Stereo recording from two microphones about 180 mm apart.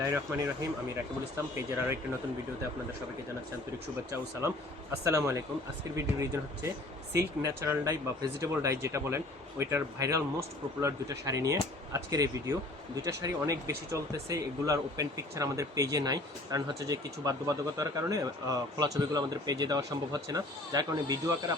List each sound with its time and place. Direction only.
0.1 s speech: 15° right (ahead or behind)
1.5 s speech: 15° right (ahead or behind)
4.1 s speech: 15° right (ahead or behind)